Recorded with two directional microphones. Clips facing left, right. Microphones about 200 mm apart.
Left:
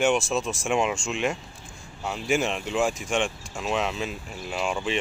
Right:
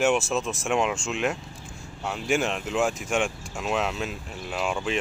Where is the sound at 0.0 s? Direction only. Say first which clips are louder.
Even; centre (ahead or behind).